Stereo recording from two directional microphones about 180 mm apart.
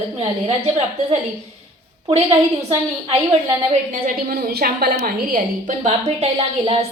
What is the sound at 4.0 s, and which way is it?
A woman's voice, 55° right (ahead or behind).